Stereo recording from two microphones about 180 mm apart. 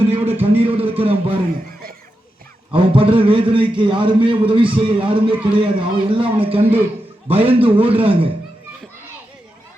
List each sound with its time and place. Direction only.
0.0 s music: 35° right (ahead or behind)
2.7 s speech: 30° right (ahead or behind)
5.3 s speech: 5° right (ahead or behind)
5.5 s a man's voice: 30° right (ahead or behind)